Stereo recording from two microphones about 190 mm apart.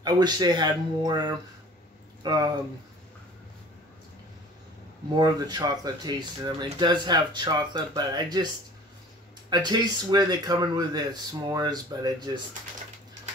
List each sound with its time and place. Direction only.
0.0 s speech: 20° right (ahead or behind)
5.1 s speech: 20° right (ahead or behind)
9.5 s speech: 20° right (ahead or behind)